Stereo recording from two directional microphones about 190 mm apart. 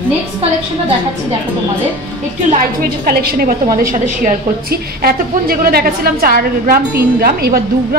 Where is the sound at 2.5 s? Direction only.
50° right (ahead or behind).